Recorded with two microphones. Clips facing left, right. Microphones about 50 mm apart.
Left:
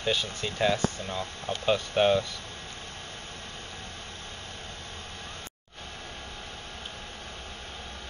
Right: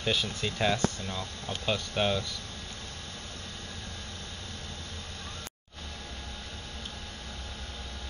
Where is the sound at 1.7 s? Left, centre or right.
Centre.